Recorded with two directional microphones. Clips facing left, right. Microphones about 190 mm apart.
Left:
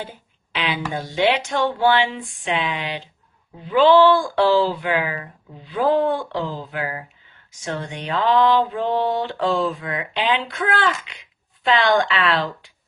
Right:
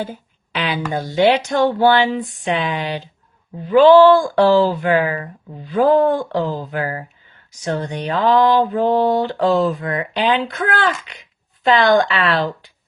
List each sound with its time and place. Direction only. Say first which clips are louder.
0.0 s speech: right 7 dB; 45° right (ahead or behind)